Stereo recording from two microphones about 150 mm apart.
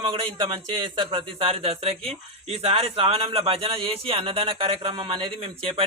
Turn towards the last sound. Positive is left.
turn(degrees=-40)  # may be behind; listen again after turning